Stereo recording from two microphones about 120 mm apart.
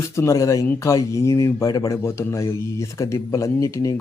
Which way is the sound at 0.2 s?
25° left (ahead or behind).